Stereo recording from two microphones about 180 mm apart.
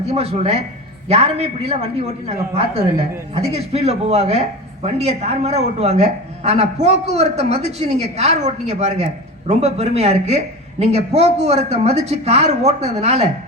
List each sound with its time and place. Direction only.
0.1 s speech: 35° right (ahead or behind)
3.5 s speech: 35° right (ahead or behind)